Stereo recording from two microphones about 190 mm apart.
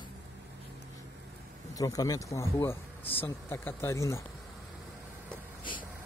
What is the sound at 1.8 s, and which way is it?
Speech, 20° left (ahead or behind).